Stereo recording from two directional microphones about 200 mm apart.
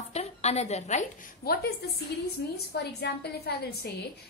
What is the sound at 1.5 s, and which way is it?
A woman's voice, 50° left (ahead or behind).